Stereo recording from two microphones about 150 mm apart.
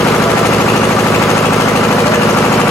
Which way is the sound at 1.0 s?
20° left (ahead or behind).